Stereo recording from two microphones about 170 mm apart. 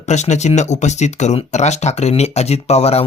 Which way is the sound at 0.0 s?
45° left (ahead or behind).